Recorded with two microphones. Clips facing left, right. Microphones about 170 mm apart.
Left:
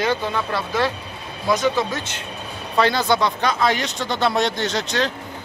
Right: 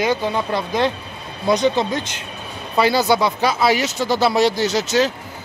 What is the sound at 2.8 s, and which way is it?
A man's voice, 10° right (ahead or behind).